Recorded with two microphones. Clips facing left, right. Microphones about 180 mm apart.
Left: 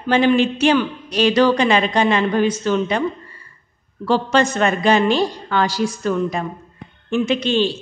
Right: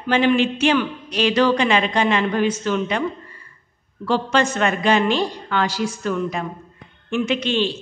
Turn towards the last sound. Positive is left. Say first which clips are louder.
# left 3 dB
turn(degrees=35)  # may be behind; listen again after turning